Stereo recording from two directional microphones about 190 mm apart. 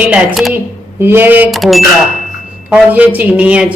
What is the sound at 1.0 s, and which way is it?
Speech, 10° right (ahead or behind).